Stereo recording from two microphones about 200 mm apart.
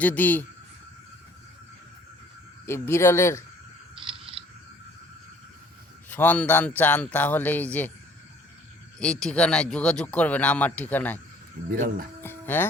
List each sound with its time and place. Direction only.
0.0 s a man's voice: 10° left (ahead or behind)
2.6 s a man's voice: 10° left (ahead or behind)
4.3 s a sound: 25° right (ahead or behind)
6.1 s a man's voice: 10° left (ahead or behind)
9.0 s speech: 5° left (ahead or behind)
11.6 s speech: 35° right (ahead or behind)
12.2 s music: 10° left (ahead or behind)